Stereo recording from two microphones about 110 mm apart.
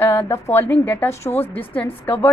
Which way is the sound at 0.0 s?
20° left (ahead or behind).